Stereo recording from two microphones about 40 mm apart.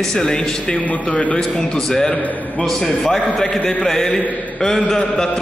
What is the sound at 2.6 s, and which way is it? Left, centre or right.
A man's voice, centre.